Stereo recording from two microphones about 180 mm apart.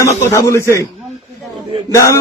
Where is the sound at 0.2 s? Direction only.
15° left (ahead or behind).